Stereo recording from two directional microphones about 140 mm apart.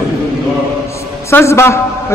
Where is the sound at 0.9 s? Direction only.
20° left (ahead or behind).